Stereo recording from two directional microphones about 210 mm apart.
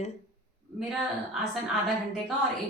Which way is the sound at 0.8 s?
Centre (ahead or behind).